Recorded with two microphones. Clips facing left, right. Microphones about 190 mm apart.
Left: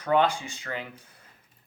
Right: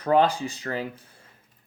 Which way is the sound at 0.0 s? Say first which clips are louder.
Right 3 dB; 35° right (ahead or behind).